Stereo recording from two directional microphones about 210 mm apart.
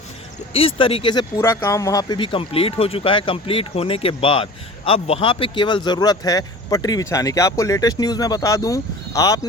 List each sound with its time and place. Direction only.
0.5 s speech: 25° left (ahead or behind)
1.4 s speech: 15° left (ahead or behind)